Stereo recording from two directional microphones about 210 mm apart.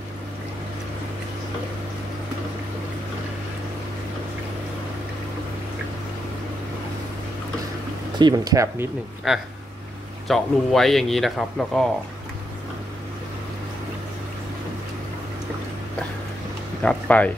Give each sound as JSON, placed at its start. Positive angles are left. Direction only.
{"t": 8.2, "sound": "speech", "side_deg": -20}
{"t": 10.2, "sound": "speech", "side_deg": 0}
{"t": 16.8, "sound": "a sound", "side_deg": 5}